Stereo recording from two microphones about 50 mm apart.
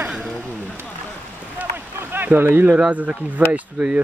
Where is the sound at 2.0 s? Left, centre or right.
Right.